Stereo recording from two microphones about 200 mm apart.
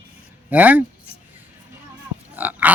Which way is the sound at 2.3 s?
10° right (ahead or behind).